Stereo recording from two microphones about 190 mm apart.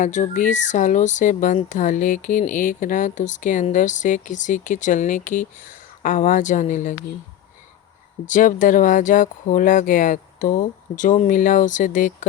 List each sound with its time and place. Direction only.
0.0 s speech: 40° left (ahead or behind)
8.3 s speech: 45° left (ahead or behind)